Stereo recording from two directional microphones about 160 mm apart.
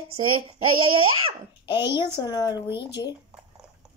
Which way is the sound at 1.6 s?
30° left (ahead or behind).